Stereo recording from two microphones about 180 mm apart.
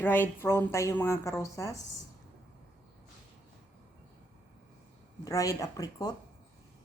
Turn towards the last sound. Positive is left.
turn(degrees=20)  # may be behind; listen again after turning